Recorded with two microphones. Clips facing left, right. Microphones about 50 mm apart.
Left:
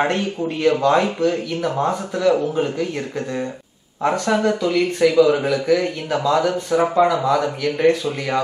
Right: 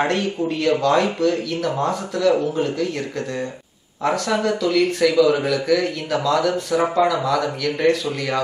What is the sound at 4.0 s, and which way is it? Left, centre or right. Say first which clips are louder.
A man's voice: left 2 dB; centre.